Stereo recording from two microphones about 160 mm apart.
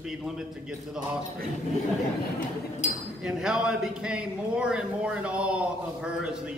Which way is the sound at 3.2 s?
5° right (ahead or behind).